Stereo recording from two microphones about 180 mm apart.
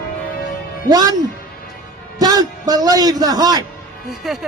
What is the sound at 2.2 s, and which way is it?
A man's voice, 20° right (ahead or behind).